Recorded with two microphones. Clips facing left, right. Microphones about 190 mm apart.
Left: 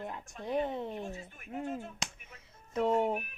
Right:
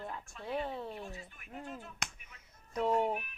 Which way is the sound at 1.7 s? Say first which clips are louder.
Left 7 dB; 45° left (ahead or behind).